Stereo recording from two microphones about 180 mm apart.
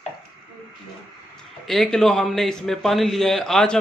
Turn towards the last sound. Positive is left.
turn(degrees=5)  # may be behind; listen again after turning